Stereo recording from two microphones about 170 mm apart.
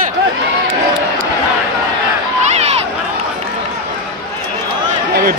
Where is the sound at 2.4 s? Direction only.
40° right (ahead or behind).